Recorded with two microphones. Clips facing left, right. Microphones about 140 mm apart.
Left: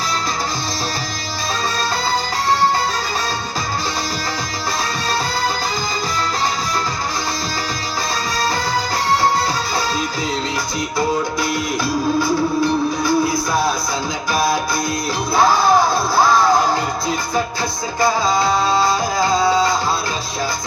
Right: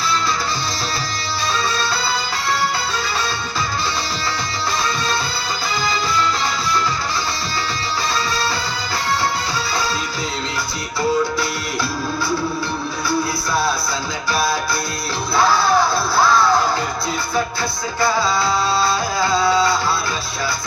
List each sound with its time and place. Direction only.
15.4 s music: 45° left (ahead or behind)
18.4 s music: 45° left (ahead or behind)